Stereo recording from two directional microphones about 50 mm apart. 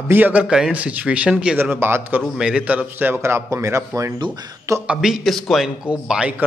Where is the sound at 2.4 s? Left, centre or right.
Centre.